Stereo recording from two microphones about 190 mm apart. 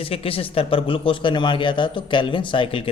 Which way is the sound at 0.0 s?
30° left (ahead or behind).